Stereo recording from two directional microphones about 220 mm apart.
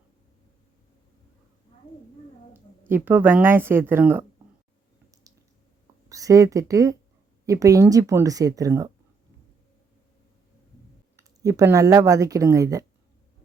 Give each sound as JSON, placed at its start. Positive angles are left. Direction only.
{"t": 2.5, "sound": "speech", "side_deg": -10}
{"t": 6.1, "sound": "speech", "side_deg": -15}
{"t": 11.4, "sound": "speech", "side_deg": -15}